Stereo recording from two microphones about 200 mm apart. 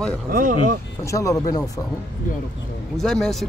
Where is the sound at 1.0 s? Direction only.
15° left (ahead or behind).